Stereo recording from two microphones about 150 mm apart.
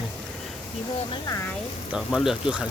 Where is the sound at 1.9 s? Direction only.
5° right (ahead or behind).